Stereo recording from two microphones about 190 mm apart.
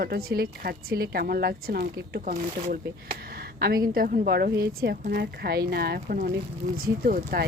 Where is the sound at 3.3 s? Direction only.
55° right (ahead or behind).